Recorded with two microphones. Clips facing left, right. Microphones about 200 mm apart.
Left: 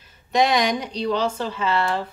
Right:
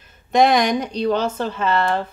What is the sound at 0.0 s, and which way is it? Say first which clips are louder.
Speech: right 4 dB; 50° right (ahead or behind).